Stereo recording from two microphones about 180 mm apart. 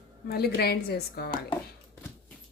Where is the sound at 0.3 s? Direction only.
60° left (ahead or behind).